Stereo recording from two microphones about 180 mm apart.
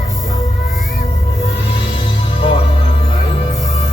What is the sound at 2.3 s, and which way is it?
Music, 30° left (ahead or behind).